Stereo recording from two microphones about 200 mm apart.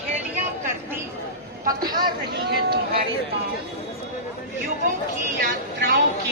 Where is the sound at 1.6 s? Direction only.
20° right (ahead or behind).